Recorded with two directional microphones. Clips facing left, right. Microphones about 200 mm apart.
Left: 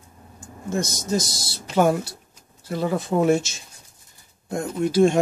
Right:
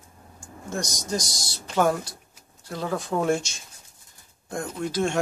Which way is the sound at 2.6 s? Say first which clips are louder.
Left 5 dB; 5° left (ahead or behind).